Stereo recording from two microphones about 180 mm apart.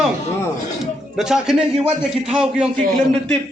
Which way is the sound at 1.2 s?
5° right (ahead or behind).